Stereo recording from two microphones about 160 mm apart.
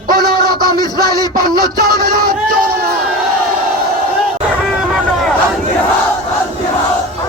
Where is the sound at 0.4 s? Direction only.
70° right (ahead or behind).